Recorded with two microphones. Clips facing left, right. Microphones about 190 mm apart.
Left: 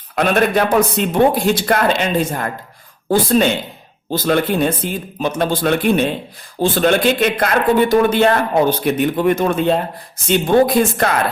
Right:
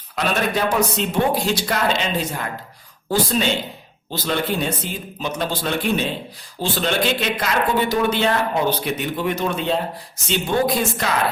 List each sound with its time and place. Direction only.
0.2 s a man's voice: 55° left (ahead or behind)